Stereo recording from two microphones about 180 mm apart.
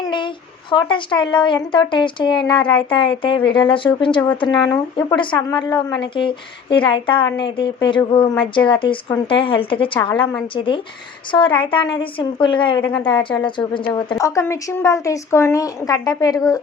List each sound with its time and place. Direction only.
0.0 s a woman's voice: 25° left (ahead or behind)